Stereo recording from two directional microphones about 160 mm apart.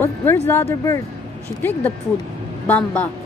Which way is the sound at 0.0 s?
15° left (ahead or behind).